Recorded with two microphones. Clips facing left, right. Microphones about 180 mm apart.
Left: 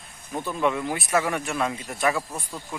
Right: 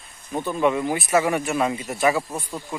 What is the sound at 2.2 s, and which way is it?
Speech, 20° right (ahead or behind).